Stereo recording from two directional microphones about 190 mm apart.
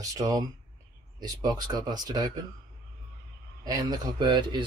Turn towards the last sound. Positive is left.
turn(degrees=-25)  # may be behind; listen again after turning